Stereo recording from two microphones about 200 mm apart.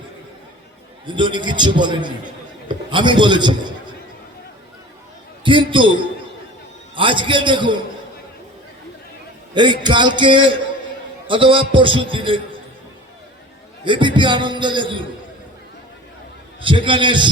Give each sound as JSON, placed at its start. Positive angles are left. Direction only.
{"t": 1.0, "sound": "a man's voice", "side_deg": -25}
{"t": 5.4, "sound": "a man's voice", "side_deg": -25}
{"t": 9.6, "sound": "a man's voice", "side_deg": -20}
{"t": 13.8, "sound": "a man's voice", "side_deg": -25}
{"t": 16.6, "sound": "a man's voice", "side_deg": -25}